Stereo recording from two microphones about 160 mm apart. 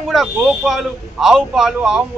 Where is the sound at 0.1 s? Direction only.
Centre (ahead or behind).